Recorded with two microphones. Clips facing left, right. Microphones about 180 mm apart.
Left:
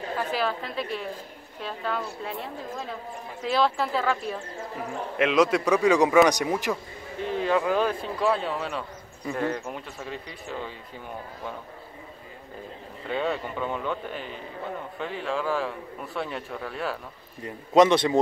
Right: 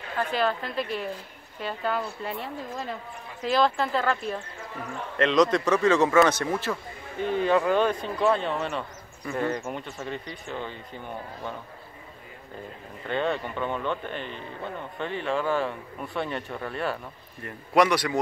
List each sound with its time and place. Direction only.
0.3 s a man's voice: centre (ahead or behind)
7.2 s speech: centre (ahead or behind)
13.0 s speech: 5° left (ahead or behind)
17.4 s a man's voice: 20° left (ahead or behind)